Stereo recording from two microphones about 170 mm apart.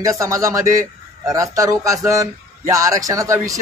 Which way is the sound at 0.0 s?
20° right (ahead or behind).